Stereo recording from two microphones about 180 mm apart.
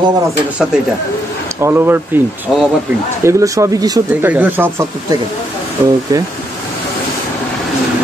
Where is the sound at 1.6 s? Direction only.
10° right (ahead or behind).